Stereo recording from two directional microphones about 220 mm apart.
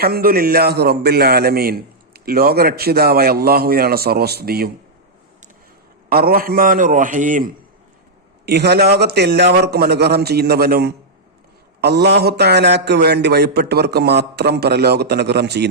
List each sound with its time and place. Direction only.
0.0 s a man's voice: 40° right (ahead or behind)
6.1 s a man's voice: 45° right (ahead or behind)
8.4 s a man's voice: 45° right (ahead or behind)